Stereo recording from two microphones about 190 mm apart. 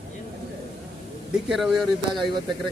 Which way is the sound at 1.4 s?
Centre (ahead or behind).